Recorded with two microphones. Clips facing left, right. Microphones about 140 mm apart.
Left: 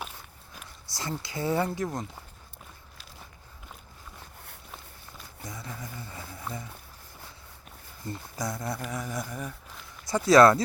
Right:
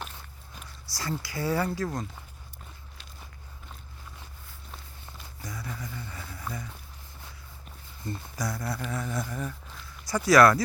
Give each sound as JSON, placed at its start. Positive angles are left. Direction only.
{"t": 0.9, "sound": "speech", "side_deg": 20}
{"t": 5.4, "sound": "a sound", "side_deg": 25}
{"t": 8.4, "sound": "speech", "side_deg": 20}
{"t": 10.1, "sound": "speech", "side_deg": 25}